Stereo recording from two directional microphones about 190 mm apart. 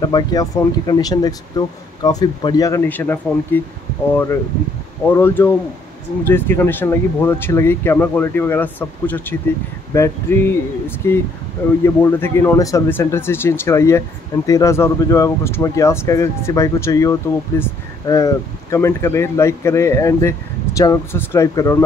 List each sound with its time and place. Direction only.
0.1 s speech: 20° left (ahead or behind)